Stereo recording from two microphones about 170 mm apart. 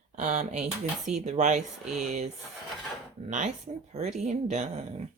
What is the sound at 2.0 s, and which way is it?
Speech, 40° right (ahead or behind).